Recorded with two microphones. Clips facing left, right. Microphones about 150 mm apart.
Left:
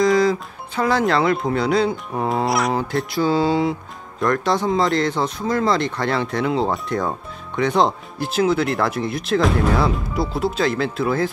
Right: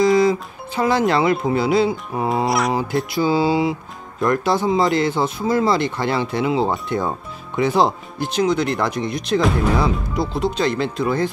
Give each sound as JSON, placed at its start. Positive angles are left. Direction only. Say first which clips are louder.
{"t": 0.0, "sound": "speech", "louder": "right 1 dB", "side_deg": 0}